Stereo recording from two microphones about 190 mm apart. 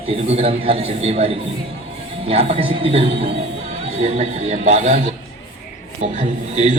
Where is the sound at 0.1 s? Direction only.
30° right (ahead or behind).